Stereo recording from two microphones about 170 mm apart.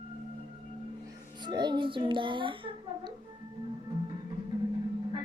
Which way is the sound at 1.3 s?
25° right (ahead or behind).